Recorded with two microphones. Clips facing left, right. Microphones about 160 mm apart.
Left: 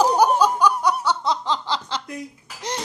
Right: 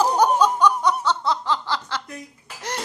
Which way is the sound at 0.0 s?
10° left (ahead or behind).